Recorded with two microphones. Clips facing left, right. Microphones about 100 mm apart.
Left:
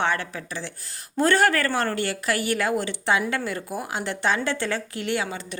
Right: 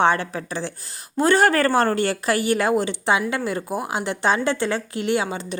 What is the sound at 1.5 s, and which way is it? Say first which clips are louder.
A woman's voice: right 5 dB; 30° right (ahead or behind).